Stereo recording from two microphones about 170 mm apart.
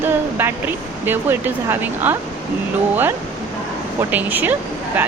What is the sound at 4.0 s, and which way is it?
Speech, 10° right (ahead or behind).